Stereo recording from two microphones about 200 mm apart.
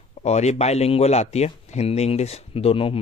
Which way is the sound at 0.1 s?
35° left (ahead or behind).